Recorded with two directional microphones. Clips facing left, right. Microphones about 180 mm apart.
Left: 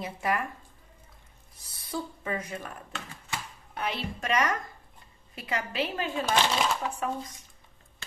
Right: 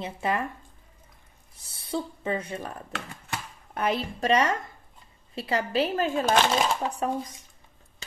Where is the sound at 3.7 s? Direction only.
45° right (ahead or behind).